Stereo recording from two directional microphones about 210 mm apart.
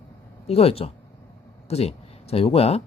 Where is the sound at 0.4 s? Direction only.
30° left (ahead or behind).